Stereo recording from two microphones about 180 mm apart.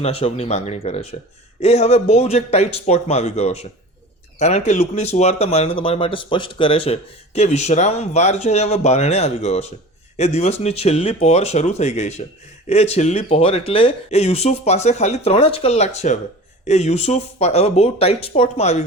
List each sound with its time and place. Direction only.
0.0 s speech: 35° left (ahead or behind)